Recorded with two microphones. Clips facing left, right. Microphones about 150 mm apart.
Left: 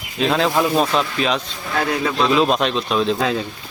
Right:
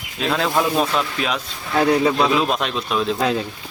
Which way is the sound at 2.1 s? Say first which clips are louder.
Left 2 dB; 5° right (ahead or behind).